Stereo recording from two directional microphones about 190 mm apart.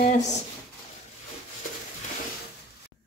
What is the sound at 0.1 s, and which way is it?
Speech, 40° left (ahead or behind).